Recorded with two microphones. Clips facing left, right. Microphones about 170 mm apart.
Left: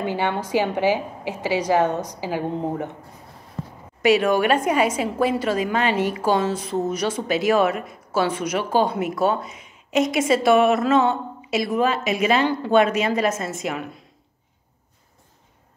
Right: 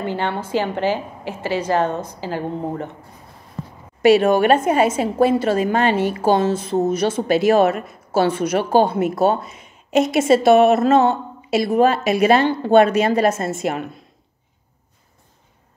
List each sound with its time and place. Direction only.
0.0 s a woman's voice: 15° left (ahead or behind)
4.0 s a woman's voice: 30° right (ahead or behind)
5.7 s a woman's voice: 40° right (ahead or behind)
6.2 s a woman's voice: 25° right (ahead or behind)
10.8 s mantra: 45° right (ahead or behind)
11.1 s a woman's voice: 30° right (ahead or behind)